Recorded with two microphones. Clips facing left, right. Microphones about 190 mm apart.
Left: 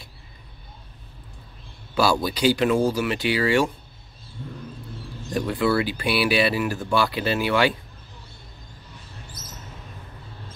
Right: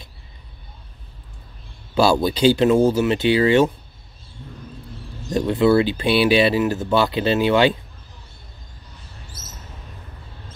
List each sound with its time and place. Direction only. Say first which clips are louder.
2.0 s speech: right 5 dB; 25° right (ahead or behind)
5.3 s speech: right 6 dB; 25° right (ahead or behind)